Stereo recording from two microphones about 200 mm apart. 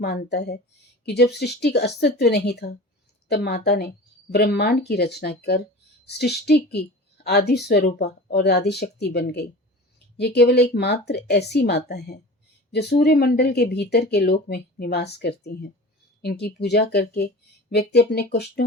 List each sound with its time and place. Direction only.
0.0 s speech: 55° left (ahead or behind)